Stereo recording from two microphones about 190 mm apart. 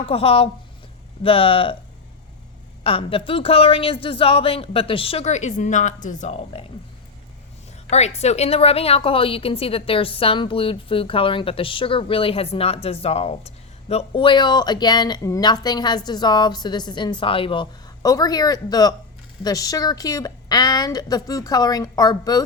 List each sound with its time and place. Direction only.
0.0 s a woman's voice: 30° left (ahead or behind)
2.8 s a woman's voice: 30° left (ahead or behind)
7.9 s a woman's voice: 35° left (ahead or behind); by 22.4 s 20° left (ahead or behind)